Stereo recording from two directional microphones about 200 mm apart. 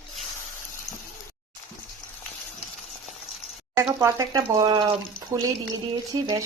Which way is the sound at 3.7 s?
15° right (ahead or behind).